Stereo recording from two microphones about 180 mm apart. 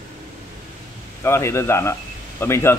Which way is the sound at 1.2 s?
15° left (ahead or behind).